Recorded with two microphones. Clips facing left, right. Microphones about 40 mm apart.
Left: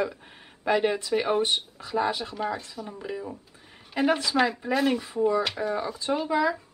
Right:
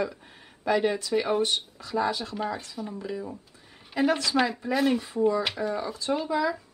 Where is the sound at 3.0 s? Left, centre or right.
Centre.